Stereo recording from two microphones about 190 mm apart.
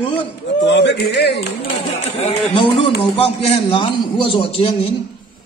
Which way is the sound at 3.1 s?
30° left (ahead or behind).